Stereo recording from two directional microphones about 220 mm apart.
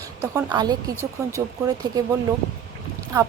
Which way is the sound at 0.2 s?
15° right (ahead or behind).